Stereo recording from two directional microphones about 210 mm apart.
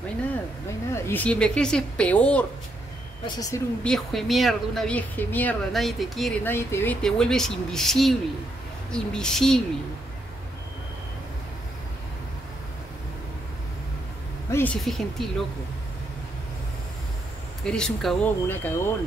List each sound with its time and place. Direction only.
0.9 s speech: 10° left (ahead or behind)
3.3 s speech: 15° left (ahead or behind)
3.8 s speech: centre (ahead or behind)
6.5 s speech: 10° left (ahead or behind)
14.5 s speech: 5° left (ahead or behind)
17.6 s speech: 5° left (ahead or behind)